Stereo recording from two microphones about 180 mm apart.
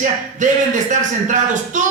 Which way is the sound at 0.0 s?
45° right (ahead or behind).